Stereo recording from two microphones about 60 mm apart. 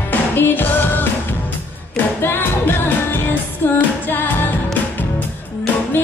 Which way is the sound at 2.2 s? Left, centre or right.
Left.